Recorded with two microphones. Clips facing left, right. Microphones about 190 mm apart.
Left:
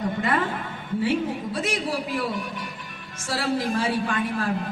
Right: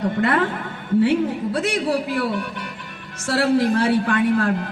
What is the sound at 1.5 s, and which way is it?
A man's voice, 65° right (ahead or behind).